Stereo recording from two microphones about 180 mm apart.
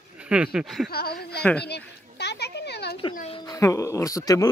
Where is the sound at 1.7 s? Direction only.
65° left (ahead or behind).